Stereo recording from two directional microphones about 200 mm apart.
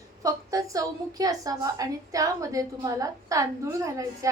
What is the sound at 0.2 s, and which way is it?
A woman's voice, 15° right (ahead or behind).